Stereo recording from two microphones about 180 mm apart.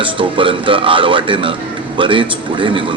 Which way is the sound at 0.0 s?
30° right (ahead or behind).